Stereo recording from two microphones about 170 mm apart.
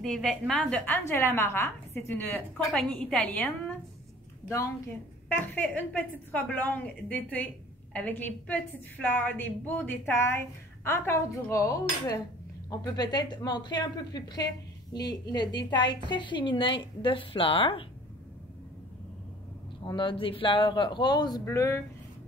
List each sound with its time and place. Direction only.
0.0 s a woman's voice: centre (ahead or behind)
5.3 s a woman's voice: 10° left (ahead or behind); by 17.8 s 30° left (ahead or behind)
19.9 s a woman's voice: 30° left (ahead or behind)